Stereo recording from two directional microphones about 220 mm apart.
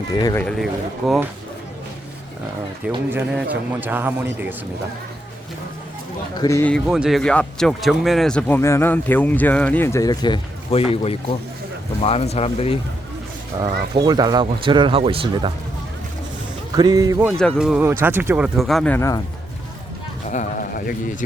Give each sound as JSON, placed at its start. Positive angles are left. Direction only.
{"t": 0.2, "sound": "speech", "side_deg": 15}
{"t": 0.4, "sound": "speech", "side_deg": 0}
{"t": 3.1, "sound": "a man's voice", "side_deg": -5}
{"t": 6.3, "sound": "speech", "side_deg": 15}
{"t": 13.5, "sound": "speech", "side_deg": -20}
{"t": 16.7, "sound": "a man's voice", "side_deg": -20}
{"t": 17.3, "sound": "speech", "side_deg": 0}
{"t": 20.3, "sound": "a sound", "side_deg": 35}